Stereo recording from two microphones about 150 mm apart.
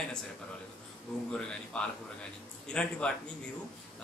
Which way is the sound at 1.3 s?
5° left (ahead or behind).